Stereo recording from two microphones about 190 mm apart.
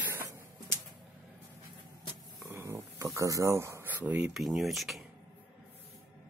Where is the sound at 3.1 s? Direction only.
15° right (ahead or behind); by 5.1 s centre (ahead or behind).